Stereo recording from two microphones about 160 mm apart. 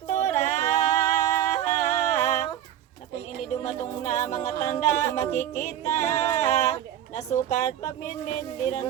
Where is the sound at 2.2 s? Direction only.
20° left (ahead or behind).